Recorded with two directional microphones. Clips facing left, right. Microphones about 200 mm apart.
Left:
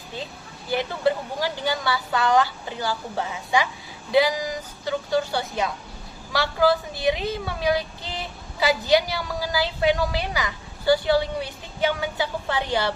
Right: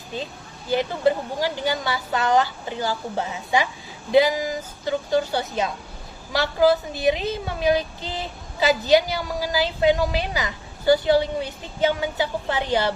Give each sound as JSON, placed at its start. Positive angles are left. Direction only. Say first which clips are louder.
{"t": 0.7, "sound": "a woman's voice", "louder": "right 2 dB", "side_deg": -20}